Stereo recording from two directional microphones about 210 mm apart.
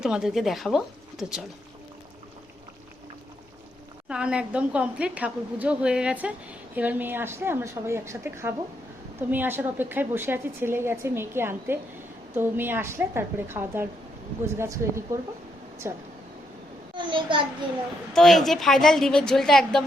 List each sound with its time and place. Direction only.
0.0 s a woman's voice: centre (ahead or behind)
4.1 s a woman's voice: 5° right (ahead or behind)
16.9 s a child's voice: 25° right (ahead or behind)
18.1 s a woman's voice: centre (ahead or behind)